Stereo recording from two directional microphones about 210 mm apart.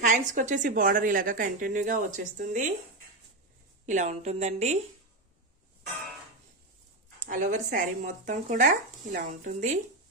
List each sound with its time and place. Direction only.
0.0 s a woman's voice: 35° right (ahead or behind)
3.8 s a woman's voice: 35° right (ahead or behind)
7.2 s a woman's voice: 40° right (ahead or behind)